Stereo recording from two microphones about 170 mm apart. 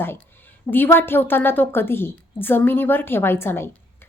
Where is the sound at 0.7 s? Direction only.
10° left (ahead or behind).